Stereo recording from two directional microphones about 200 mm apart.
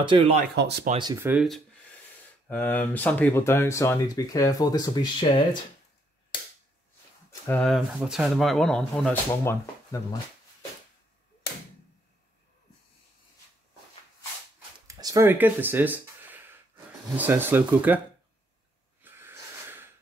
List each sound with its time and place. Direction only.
0.0 s speech: 25° right (ahead or behind)
0.6 s speech: 55° right (ahead or behind)
1.1 s speech: 10° right (ahead or behind)
2.4 s speech: 10° left (ahead or behind)
7.6 s speech: centre (ahead or behind)
14.9 s speech: 15° right (ahead or behind)
19.0 s snort: 10° right (ahead or behind)